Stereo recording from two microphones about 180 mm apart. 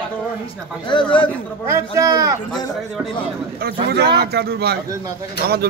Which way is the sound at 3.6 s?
65° right (ahead or behind).